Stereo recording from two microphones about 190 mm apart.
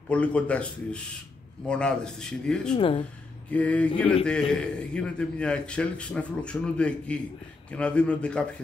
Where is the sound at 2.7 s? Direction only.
30° left (ahead or behind).